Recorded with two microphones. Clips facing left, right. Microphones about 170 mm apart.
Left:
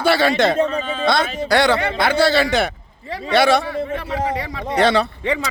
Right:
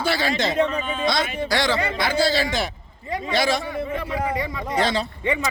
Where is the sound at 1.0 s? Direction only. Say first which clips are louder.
Left 5 dB; 60° left (ahead or behind).